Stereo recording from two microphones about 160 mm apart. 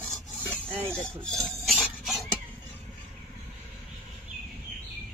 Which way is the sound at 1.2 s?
Centre (ahead or behind).